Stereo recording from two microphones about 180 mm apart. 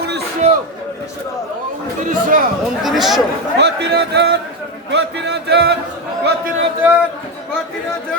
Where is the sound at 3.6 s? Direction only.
70° right (ahead or behind).